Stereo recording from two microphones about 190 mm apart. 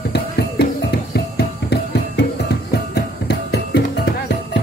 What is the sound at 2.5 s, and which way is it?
Music, 55° left (ahead or behind).